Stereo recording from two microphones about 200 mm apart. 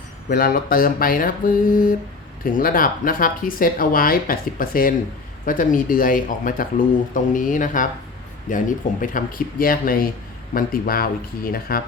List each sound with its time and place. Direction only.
0.3 s speech: 45° left (ahead or behind)